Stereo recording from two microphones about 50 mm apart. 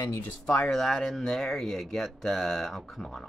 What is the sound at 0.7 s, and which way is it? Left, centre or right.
A man's voice, centre.